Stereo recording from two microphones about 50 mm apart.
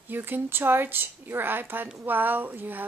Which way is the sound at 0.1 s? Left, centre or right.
Right.